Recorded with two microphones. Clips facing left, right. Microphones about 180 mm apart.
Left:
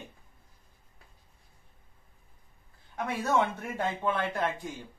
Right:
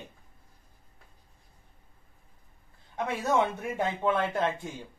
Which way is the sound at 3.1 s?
20° right (ahead or behind).